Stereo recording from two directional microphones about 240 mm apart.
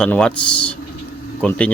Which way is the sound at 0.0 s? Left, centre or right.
Centre.